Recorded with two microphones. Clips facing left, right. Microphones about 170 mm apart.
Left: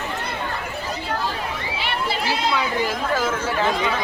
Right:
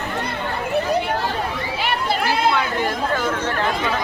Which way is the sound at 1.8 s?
50° right (ahead or behind).